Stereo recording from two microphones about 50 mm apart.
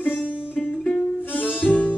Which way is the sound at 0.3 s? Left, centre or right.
Centre.